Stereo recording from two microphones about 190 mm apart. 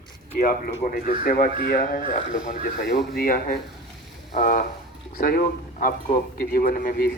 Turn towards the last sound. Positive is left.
turn(degrees=50)  # may be behind; listen again after turning